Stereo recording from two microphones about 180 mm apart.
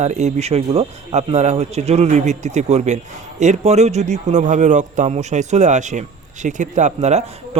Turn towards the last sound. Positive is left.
turn(degrees=-40)  # may be behind; listen again after turning